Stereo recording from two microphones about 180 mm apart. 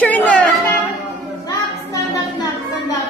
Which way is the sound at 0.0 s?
10° left (ahead or behind).